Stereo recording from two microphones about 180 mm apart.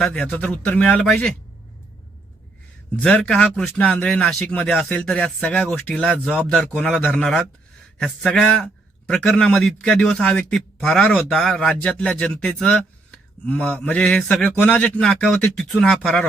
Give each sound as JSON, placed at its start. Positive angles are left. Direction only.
{"t": 0.0, "sound": "speech", "side_deg": 5}
{"t": 3.0, "sound": "a man's voice", "side_deg": 5}